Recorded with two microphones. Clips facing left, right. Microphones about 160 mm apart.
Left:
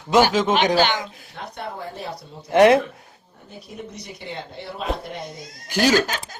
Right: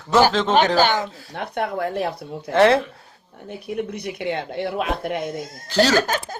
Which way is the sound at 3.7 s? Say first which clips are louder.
Right 9 dB; 60° right (ahead or behind).